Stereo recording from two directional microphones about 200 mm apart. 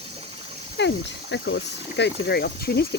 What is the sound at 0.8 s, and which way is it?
Speech, 60° left (ahead or behind).